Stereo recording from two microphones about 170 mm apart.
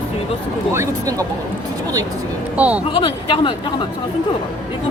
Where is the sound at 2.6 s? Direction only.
10° right (ahead or behind).